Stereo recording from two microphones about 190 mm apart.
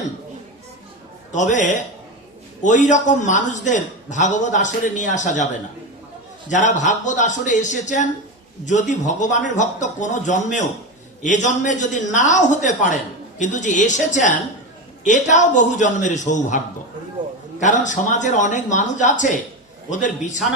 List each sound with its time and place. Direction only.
1.3 s a man's voice: 40° left (ahead or behind)
6.5 s a man's voice: 40° left (ahead or behind)
17.6 s a man's voice: 40° left (ahead or behind)